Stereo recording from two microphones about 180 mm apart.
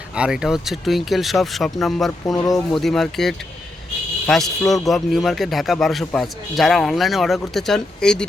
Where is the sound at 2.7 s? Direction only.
Centre (ahead or behind).